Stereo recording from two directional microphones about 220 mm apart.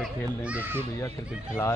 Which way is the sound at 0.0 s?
5° right (ahead or behind).